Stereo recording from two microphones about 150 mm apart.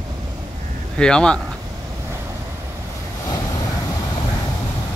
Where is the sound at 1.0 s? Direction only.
5° left (ahead or behind).